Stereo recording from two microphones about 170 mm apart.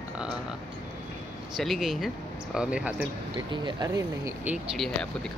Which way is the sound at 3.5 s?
25° right (ahead or behind).